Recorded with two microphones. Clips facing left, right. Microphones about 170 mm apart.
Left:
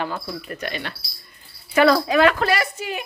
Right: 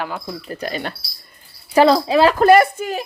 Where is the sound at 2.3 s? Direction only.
50° right (ahead or behind).